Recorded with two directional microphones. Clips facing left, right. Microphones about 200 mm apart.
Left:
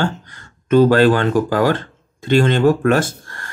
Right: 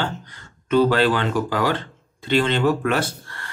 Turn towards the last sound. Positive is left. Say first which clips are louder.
# left 3 dB
turn(degrees=45)  # may be behind; listen again after turning